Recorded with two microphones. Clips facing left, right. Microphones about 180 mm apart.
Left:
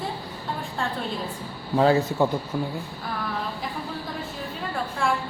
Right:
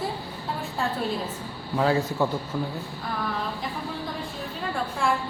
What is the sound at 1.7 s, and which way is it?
Speech, 30° left (ahead or behind).